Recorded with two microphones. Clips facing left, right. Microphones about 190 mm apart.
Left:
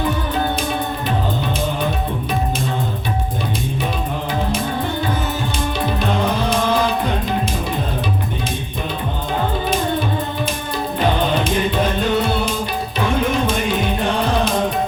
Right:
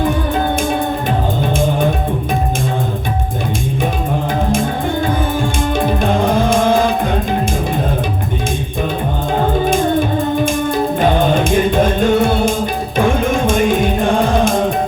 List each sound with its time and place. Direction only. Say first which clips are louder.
1.5 s music: right 6 dB; 50° right (ahead or behind)
5.8 s music: right 4 dB; 50° right (ahead or behind)
11.0 s music: right 3 dB; 50° right (ahead or behind)